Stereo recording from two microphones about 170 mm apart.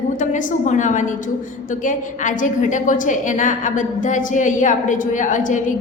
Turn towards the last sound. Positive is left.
turn(degrees=50)  # may be behind; listen again after turning